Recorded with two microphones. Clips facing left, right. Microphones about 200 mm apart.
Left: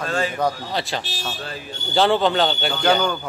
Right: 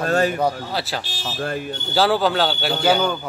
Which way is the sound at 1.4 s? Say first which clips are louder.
Right 7 dB; 55° right (ahead or behind).